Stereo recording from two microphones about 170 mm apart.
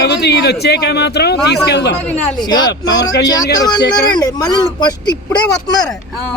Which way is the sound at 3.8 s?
70° left (ahead or behind).